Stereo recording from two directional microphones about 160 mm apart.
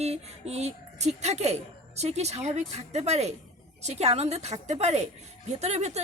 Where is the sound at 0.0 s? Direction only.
40° right (ahead or behind).